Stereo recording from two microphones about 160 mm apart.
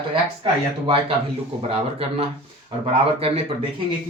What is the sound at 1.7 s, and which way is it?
Speech, 35° right (ahead or behind).